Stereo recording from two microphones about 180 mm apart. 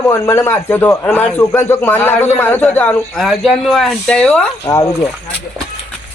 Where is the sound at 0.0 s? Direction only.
15° left (ahead or behind).